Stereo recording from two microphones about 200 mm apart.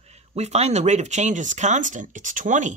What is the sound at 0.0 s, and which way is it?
Speech, 35° right (ahead or behind).